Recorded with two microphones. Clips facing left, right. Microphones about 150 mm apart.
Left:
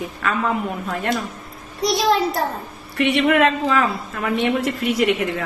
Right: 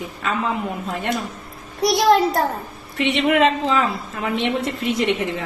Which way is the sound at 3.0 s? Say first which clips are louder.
Left 1 dB; 20° right (ahead or behind).